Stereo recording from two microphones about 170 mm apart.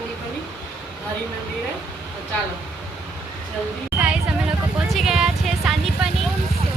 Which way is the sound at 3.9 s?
5° right (ahead or behind).